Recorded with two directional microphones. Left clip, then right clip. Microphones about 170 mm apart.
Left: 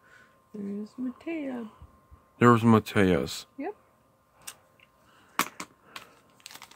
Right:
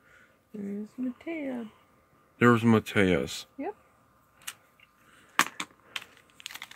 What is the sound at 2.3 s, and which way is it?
Speech, 35° left (ahead or behind).